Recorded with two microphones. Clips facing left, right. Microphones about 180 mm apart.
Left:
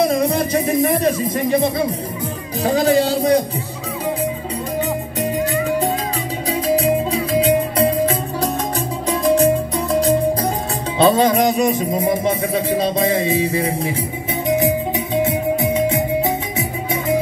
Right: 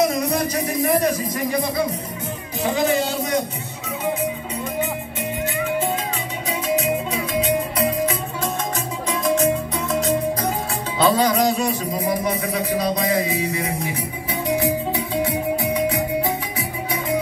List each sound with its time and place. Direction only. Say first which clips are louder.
0.0 s music: left 3 dB; 30° left (ahead or behind)
2.6 s a sound: left 5 dB; 35° left (ahead or behind)
6.7 s music: left 5 dB; 30° left (ahead or behind)
14.5 s music: left 4 dB; 20° left (ahead or behind)